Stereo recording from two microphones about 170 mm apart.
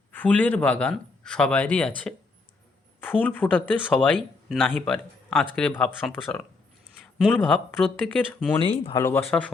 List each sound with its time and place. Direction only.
0.1 s speech: 10° left (ahead or behind)
3.0 s speech: 10° left (ahead or behind)
7.0 s a sound: centre (ahead or behind)
7.9 s speech: 10° left (ahead or behind)
8.5 s speech: 35° left (ahead or behind)
9.0 s speech: 10° left (ahead or behind)